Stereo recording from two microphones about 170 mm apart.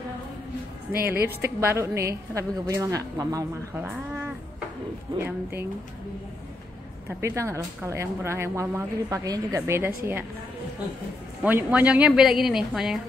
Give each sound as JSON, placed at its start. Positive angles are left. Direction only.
{"t": 1.4, "sound": "speech", "side_deg": -15}
{"t": 5.1, "sound": "speech", "side_deg": -25}
{"t": 7.1, "sound": "speech", "side_deg": -15}
{"t": 11.4, "sound": "a woman's voice", "side_deg": -10}